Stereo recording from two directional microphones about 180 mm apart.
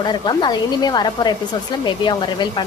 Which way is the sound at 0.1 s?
25° left (ahead or behind).